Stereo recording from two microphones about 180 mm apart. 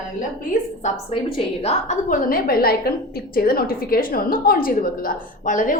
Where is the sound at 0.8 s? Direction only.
35° left (ahead or behind).